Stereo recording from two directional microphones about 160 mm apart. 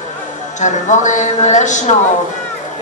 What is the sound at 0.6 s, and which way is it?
Speech, 50° left (ahead or behind).